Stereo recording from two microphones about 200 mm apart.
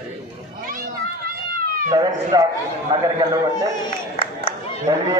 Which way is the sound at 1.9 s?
20° right (ahead or behind).